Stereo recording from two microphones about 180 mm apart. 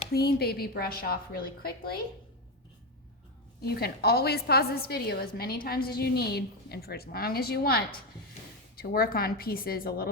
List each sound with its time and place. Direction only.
0.1 s a woman's voice: 60° left (ahead or behind)
3.6 s a woman's voice: 60° left (ahead or behind)